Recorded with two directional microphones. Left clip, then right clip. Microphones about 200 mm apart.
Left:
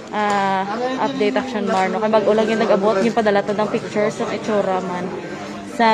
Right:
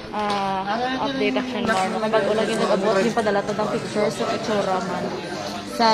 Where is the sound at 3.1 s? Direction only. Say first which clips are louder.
Left 4 dB; 30° left (ahead or behind).